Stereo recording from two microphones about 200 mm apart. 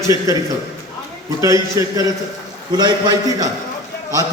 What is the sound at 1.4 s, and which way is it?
A man's voice, 15° right (ahead or behind).